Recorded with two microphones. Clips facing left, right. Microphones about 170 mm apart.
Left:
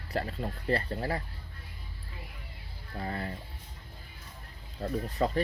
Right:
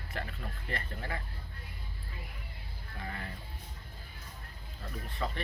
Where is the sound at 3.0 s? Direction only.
35° left (ahead or behind).